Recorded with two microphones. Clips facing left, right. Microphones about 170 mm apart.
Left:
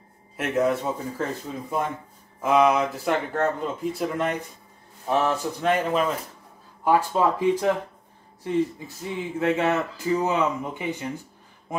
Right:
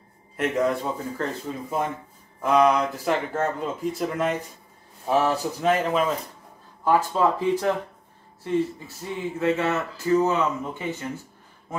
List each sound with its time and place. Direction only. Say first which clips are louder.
0.4 s speech: even; centre (ahead or behind)
6.8 s speech: even; 10° left (ahead or behind)